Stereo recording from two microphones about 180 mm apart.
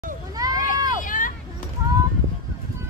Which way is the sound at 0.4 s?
20° right (ahead or behind).